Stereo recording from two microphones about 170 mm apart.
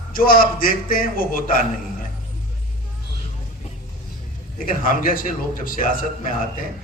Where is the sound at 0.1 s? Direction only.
55° left (ahead or behind).